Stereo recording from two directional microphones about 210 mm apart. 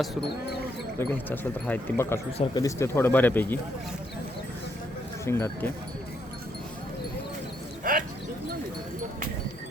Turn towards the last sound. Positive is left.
turn(degrees=-40)  # may be behind; listen again after turning